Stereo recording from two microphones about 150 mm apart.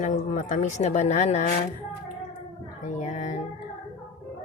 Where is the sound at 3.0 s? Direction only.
55° left (ahead or behind).